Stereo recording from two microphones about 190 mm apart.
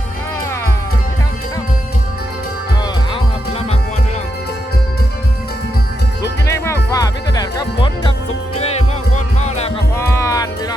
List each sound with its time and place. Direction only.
6.5 s music: 15° left (ahead or behind); by 9.7 s 35° left (ahead or behind)
10.0 s music: 15° left (ahead or behind)